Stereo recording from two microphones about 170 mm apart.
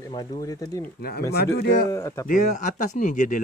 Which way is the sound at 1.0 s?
65° left (ahead or behind).